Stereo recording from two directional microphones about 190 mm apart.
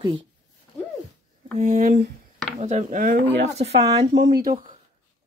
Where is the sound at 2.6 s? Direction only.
35° right (ahead or behind).